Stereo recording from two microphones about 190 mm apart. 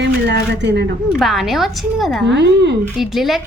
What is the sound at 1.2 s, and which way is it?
Speech, centre (ahead or behind).